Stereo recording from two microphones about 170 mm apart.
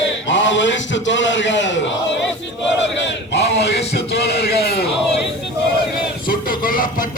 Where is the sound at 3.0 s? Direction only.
90° left; by 4.8 s 75° left (ahead or behind).